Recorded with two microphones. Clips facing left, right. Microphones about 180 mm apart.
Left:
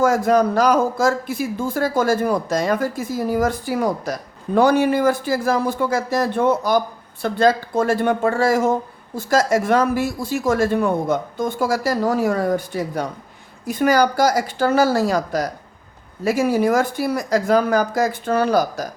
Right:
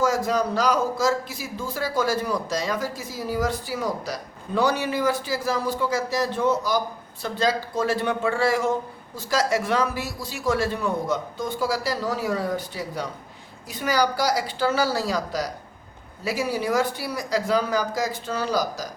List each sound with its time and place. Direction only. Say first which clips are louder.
0.0 s a man's voice: left 6 dB; 55° left (ahead or behind)